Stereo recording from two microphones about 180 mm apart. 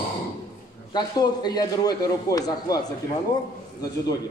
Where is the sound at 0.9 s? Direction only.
20° left (ahead or behind).